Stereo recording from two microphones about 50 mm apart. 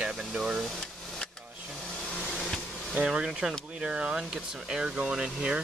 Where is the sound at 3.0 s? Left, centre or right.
Centre.